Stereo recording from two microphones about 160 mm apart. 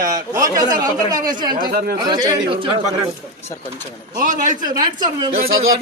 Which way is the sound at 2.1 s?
35° right (ahead or behind).